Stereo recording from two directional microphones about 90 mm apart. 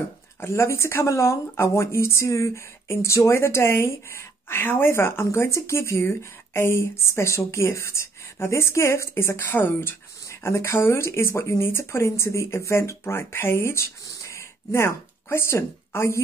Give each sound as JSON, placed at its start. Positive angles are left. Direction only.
{"t": 0.4, "sound": "speech", "side_deg": 30}